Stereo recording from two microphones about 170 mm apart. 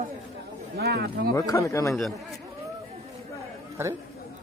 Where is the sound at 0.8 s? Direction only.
70° right (ahead or behind).